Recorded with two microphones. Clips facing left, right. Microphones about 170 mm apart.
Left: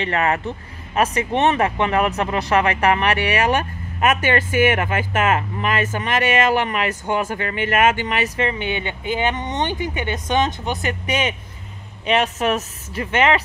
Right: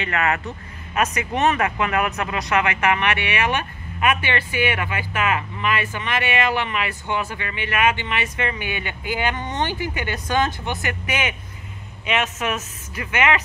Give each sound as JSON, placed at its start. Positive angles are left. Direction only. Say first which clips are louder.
{"t": 0.0, "sound": "speech", "louder": "left 3 dB", "side_deg": 30}
{"t": 8.5, "sound": "speech", "louder": "left 4 dB", "side_deg": 25}
{"t": 12.1, "sound": "speech", "louder": "left 5 dB", "side_deg": 35}